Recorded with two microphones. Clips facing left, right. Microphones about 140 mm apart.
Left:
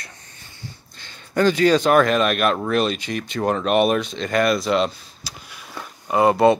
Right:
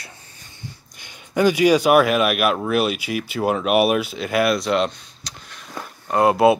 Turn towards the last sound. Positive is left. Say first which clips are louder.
# even
turn(degrees=-5)  # may be behind; listen again after turning